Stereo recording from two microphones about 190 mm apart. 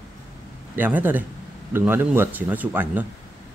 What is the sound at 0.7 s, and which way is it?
Speech, 10° right (ahead or behind).